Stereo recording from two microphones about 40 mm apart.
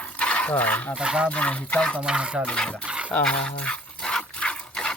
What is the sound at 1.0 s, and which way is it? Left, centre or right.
Speech, centre.